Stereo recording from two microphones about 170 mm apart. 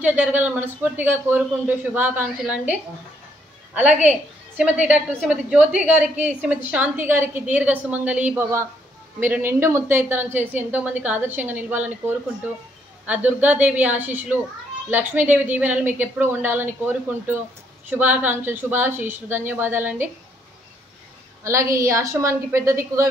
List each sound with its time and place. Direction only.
0.0 s a woman's voice: 10° right (ahead or behind)
4.6 s a woman's voice: 10° right (ahead or behind)
13.0 s a woman's voice: 10° right (ahead or behind)
21.5 s a woman's voice: 20° right (ahead or behind)